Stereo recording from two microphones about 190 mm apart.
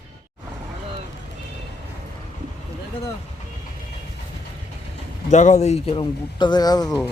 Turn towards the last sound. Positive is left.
turn(degrees=20)  # may be behind; listen again after turning